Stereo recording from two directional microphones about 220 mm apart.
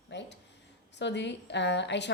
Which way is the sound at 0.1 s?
55° left (ahead or behind).